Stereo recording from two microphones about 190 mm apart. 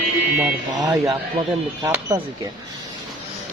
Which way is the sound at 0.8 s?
20° right (ahead or behind).